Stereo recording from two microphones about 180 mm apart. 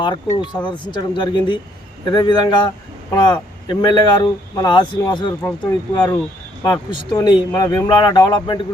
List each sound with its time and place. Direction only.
0.0 s speech: 25° left (ahead or behind)